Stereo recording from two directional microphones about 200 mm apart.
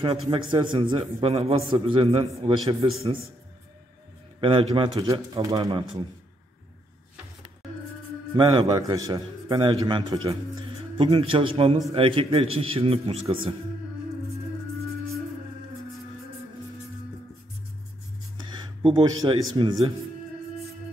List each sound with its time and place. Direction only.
0.0 s a man's voice: 25° right (ahead or behind)
4.4 s a man's voice: 25° right (ahead or behind)
8.4 s a man's voice: 25° right (ahead or behind)
18.4 s speech: 20° right (ahead or behind)